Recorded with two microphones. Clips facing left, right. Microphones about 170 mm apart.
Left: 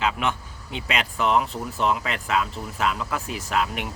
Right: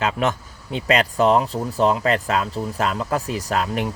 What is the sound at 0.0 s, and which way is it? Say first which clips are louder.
Speech: right 4 dB; 40° right (ahead or behind).